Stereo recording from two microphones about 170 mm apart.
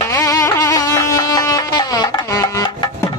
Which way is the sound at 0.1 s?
20° left (ahead or behind).